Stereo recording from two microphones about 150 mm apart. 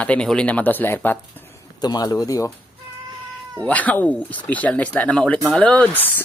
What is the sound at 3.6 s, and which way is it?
Speech, 10° left (ahead or behind).